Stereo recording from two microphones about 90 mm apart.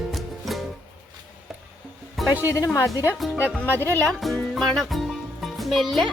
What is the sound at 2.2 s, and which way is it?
Speech, 20° right (ahead or behind).